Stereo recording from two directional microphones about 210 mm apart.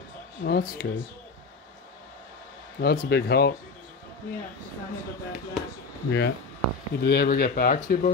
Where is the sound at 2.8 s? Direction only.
45° left (ahead or behind).